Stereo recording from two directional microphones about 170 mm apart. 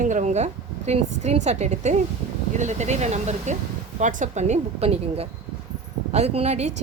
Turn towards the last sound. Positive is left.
turn(degrees=-40)  # may be behind; listen again after turning